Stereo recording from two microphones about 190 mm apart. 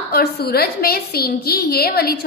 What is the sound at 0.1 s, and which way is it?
A woman's voice, 55° left (ahead or behind).